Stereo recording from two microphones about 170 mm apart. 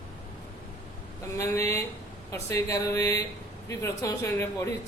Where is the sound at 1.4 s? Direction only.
20° left (ahead or behind).